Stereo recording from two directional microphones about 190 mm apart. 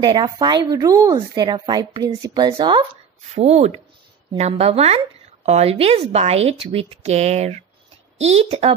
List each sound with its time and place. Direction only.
0.0 s a woman's voice: 25° right (ahead or behind)